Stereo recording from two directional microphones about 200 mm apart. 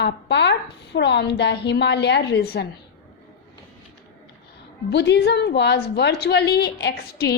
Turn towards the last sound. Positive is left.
turn(degrees=50)  # may be behind; listen again after turning